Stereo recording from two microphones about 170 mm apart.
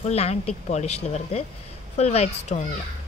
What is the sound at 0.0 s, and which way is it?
Speech, 40° left (ahead or behind).